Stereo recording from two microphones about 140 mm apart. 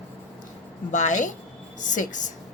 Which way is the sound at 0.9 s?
60° left (ahead or behind).